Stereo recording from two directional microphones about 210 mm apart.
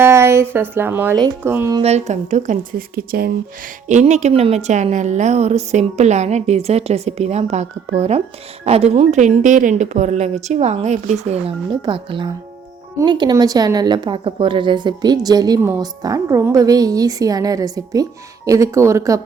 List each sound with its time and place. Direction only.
0.0 s a woman's voice: 10° right (ahead or behind)
1.8 s a woman's voice: 30° right (ahead or behind)
3.8 s a woman's voice: 35° right (ahead or behind); by 19.2 s 15° right (ahead or behind)